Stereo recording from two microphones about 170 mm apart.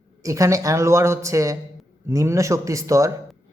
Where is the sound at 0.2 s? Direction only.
20° right (ahead or behind).